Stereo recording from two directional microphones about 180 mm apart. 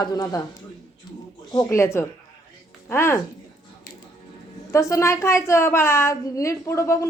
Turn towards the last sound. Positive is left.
turn(degrees=15)  # may be behind; listen again after turning